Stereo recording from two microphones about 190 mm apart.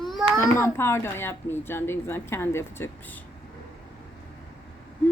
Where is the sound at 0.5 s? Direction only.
15° left (ahead or behind).